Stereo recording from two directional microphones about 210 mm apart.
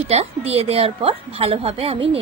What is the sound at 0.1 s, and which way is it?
A woman's voice, 30° right (ahead or behind).